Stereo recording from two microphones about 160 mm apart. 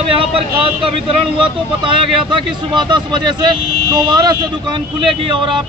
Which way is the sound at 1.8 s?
30° right (ahead or behind).